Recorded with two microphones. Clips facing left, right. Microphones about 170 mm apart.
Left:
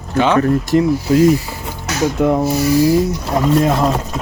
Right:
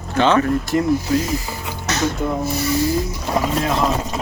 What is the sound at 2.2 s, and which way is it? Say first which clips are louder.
Speech: left 8 dB; 75° left (ahead or behind).